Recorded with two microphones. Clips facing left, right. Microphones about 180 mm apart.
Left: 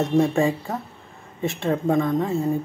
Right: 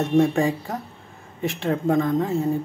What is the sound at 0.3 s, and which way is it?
Speech, 30° left (ahead or behind).